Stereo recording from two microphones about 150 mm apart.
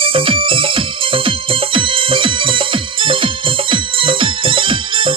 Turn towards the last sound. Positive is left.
turn(degrees=-35)  # may be behind; listen again after turning